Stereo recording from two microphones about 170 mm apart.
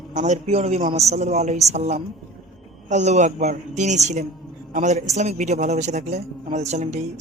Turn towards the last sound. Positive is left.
turn(degrees=-40)  # may be behind; listen again after turning